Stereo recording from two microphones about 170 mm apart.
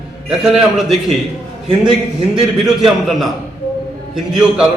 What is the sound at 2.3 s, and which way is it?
A man's voice, centre (ahead or behind).